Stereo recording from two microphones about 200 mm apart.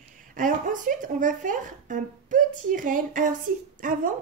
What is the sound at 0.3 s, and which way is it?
A woman's voice, 40° right (ahead or behind).